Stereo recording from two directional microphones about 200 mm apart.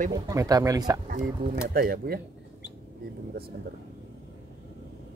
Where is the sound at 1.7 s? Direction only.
50° right (ahead or behind).